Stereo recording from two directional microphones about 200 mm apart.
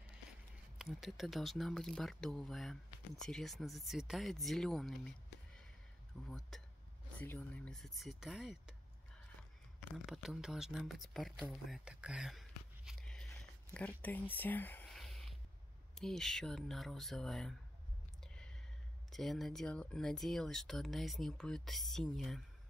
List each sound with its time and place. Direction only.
0.7 s speech: centre (ahead or behind)
6.2 s speech: centre (ahead or behind)
10.0 s speech: centre (ahead or behind)
13.3 s a sound: 5° left (ahead or behind)
15.9 s speech: centre (ahead or behind)
18.2 s a sound: 5° left (ahead or behind)
19.0 s speech: centre (ahead or behind)